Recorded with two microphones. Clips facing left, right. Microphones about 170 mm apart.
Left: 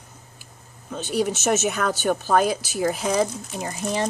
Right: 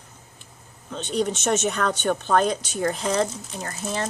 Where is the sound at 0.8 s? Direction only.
5° left (ahead or behind).